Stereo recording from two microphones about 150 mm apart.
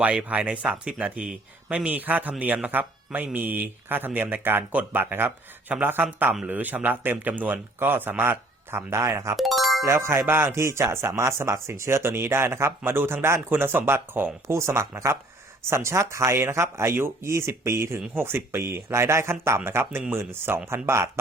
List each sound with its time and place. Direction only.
0.0 s speech: 10° right (ahead or behind)
9.3 s music: centre (ahead or behind)
9.8 s speech: 20° right (ahead or behind)